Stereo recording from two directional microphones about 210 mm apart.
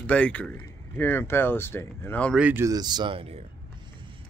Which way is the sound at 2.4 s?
10° right (ahead or behind).